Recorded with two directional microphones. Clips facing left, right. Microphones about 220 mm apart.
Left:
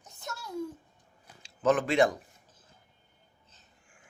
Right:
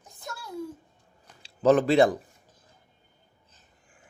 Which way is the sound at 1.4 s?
35° right (ahead or behind).